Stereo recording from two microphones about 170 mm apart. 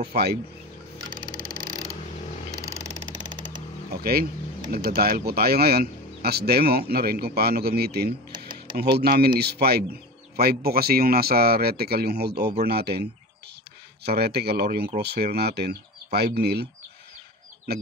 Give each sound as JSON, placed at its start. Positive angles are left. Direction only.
{"t": 0.1, "sound": "speech", "side_deg": -70}
{"t": 3.9, "sound": "speech", "side_deg": -65}
{"t": 8.3, "sound": "computer keyboard", "side_deg": -25}
{"t": 8.9, "sound": "speech", "side_deg": -65}